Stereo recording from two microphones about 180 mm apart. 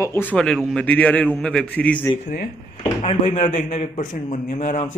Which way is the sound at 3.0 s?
40° left (ahead or behind).